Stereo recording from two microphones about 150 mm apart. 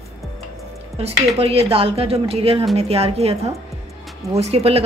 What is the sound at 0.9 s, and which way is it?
Speech, 40° right (ahead or behind).